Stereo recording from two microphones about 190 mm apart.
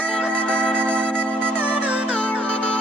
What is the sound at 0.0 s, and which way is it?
Music, 5° left (ahead or behind).